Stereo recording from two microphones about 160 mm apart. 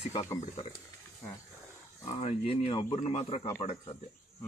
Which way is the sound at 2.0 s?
35° left (ahead or behind).